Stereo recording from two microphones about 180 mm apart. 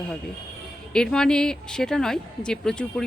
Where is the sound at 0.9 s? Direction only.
5° left (ahead or behind).